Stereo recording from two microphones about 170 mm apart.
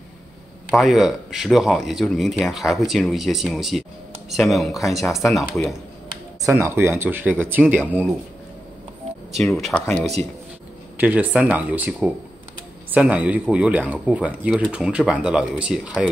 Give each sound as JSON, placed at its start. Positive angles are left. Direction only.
{"t": 0.7, "sound": "speech", "side_deg": 0}
{"t": 6.4, "sound": "speech", "side_deg": -15}
{"t": 9.4, "sound": "speech", "side_deg": 0}
{"t": 11.0, "sound": "speech", "side_deg": -10}